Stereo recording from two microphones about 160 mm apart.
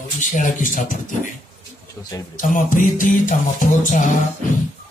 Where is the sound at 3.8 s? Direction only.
55° left (ahead or behind).